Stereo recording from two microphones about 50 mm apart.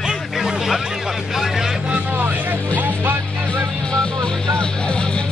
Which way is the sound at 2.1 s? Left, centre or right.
Right.